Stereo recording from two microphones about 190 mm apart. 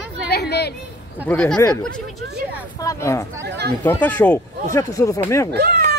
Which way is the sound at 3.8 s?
10° left (ahead or behind).